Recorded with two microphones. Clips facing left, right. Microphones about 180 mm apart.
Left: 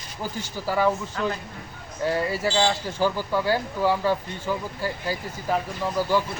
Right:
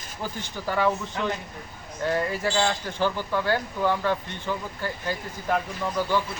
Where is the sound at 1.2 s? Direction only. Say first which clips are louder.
Left 1 dB; 15° right (ahead or behind).